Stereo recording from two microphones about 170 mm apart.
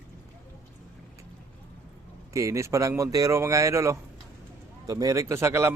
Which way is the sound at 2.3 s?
20° right (ahead or behind).